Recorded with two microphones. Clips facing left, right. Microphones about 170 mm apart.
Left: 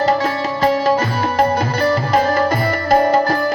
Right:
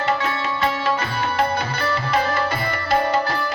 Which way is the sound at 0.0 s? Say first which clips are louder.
Left 6 dB; 40° left (ahead or behind).